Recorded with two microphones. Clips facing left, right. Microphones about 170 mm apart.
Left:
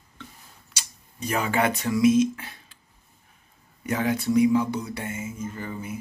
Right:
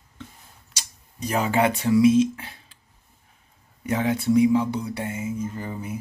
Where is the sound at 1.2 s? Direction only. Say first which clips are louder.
Right 2 dB; 35° right (ahead or behind).